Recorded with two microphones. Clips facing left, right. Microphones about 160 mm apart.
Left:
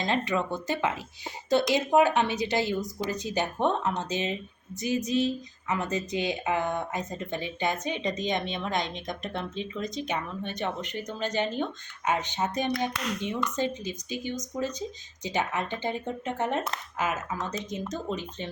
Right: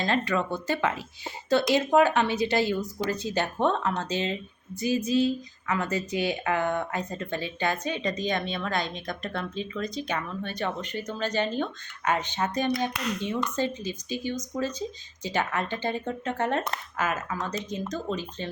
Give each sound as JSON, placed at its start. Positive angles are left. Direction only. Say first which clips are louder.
{"t": 0.0, "sound": "speech", "louder": "right 1 dB", "side_deg": 20}
{"t": 13.6, "sound": "speech", "louder": "right 1 dB", "side_deg": 15}